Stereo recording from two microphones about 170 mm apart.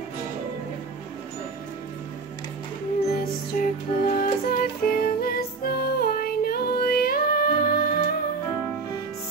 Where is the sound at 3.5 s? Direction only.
50° left (ahead or behind).